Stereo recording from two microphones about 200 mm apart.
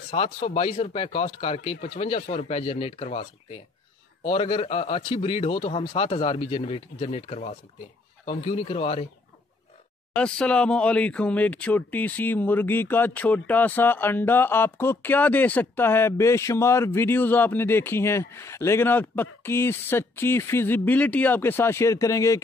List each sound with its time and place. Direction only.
0.1 s a man's voice: 35° left (ahead or behind)
10.1 s speech: 5° left (ahead or behind)